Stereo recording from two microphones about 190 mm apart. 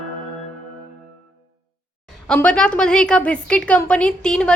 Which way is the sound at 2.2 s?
5° left (ahead or behind).